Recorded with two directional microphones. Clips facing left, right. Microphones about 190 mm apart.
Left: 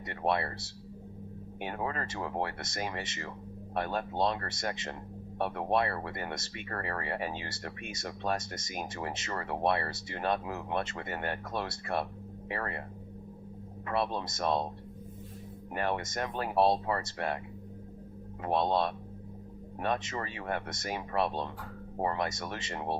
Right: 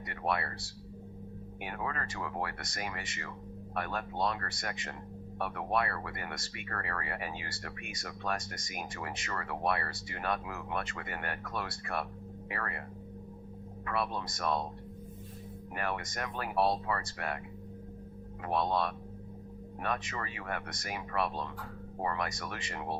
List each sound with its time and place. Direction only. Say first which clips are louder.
0.1 s speech: left 4 dB; 30° left (ahead or behind)
13.8 s speech: left 3 dB; 30° left (ahead or behind)
15.7 s speech: left 4 dB; 30° left (ahead or behind)
18.4 s speech: left 3 dB; 30° left (ahead or behind)